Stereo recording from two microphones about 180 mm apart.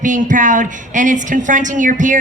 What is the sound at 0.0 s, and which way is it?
A woman's voice, 45° right (ahead or behind).